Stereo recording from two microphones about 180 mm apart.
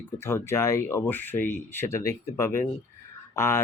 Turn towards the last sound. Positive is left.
turn(degrees=15)  # may be behind; listen again after turning